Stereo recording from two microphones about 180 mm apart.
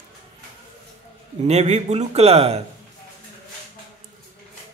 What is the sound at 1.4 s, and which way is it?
A man's voice, 35° right (ahead or behind).